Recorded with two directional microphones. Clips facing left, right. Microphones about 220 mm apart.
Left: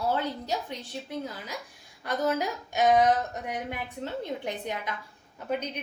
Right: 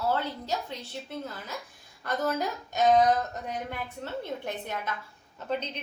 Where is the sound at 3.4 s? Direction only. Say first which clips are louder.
Left 1 dB; 15° left (ahead or behind).